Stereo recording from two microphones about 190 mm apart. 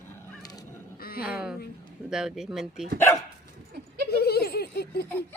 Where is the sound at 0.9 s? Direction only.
50° left (ahead or behind).